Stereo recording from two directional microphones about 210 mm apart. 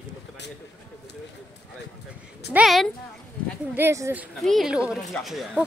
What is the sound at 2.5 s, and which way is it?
A woman's voice, centre (ahead or behind).